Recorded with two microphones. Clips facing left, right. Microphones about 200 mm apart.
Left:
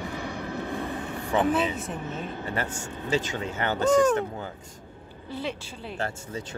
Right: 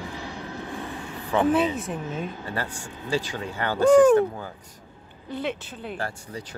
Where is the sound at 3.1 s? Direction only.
20° left (ahead or behind).